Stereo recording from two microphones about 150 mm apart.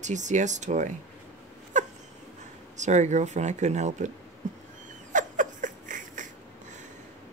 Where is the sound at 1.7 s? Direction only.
55° right (ahead or behind).